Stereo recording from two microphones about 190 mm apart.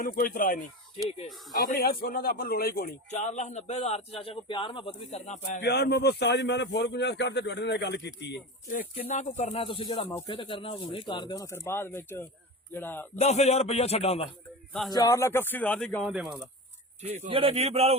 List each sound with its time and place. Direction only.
0.0 s a man's voice: 55° left (ahead or behind); by 5.4 s 35° left (ahead or behind)
5.5 s speech: 55° left (ahead or behind)
9.0 s a man's voice: 35° left (ahead or behind); by 13.1 s 10° left (ahead or behind)
13.1 s a man's voice: 35° left (ahead or behind)
14.7 s a man's voice: centre (ahead or behind)
14.9 s speech: 15° left (ahead or behind); by 16.4 s centre (ahead or behind)
17.2 s speech: 30° right (ahead or behind)